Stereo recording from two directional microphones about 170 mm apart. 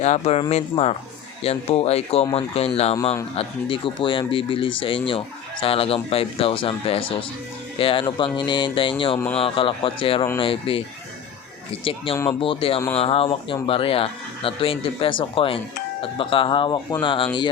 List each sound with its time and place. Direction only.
0.0 s speech: 40° left (ahead or behind)
9.1 s speech: 10° left (ahead or behind)
9.4 s speech: 30° left (ahead or behind)
11.9 s speech: 35° left (ahead or behind)